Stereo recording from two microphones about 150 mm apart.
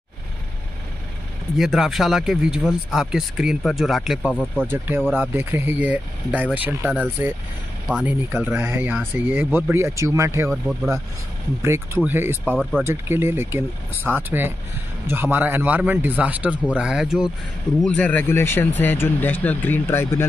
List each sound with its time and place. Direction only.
1.6 s speech: centre (ahead or behind)
4.6 s a man's voice: 10° right (ahead or behind)
7.9 s speech: 10° left (ahead or behind)
8.5 s a man's voice: 15° right (ahead or behind)
11.6 s a man's voice: 20° right (ahead or behind)
17.8 s speech: 10° left (ahead or behind)